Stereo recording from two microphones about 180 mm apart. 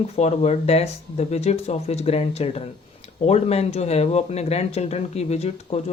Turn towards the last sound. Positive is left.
turn(degrees=35)  # may be behind; listen again after turning